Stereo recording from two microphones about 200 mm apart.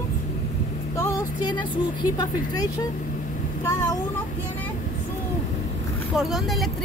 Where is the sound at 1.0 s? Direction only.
20° left (ahead or behind).